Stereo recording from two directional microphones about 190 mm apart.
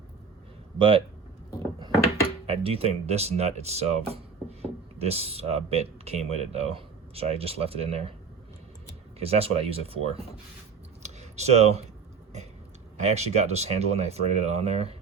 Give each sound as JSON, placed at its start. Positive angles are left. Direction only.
{"t": 0.8, "sound": "speech", "side_deg": -30}
{"t": 2.5, "sound": "speech", "side_deg": -30}
{"t": 9.1, "sound": "speech", "side_deg": -30}
{"t": 11.0, "sound": "a sound", "side_deg": -35}
{"t": 13.1, "sound": "speech", "side_deg": -35}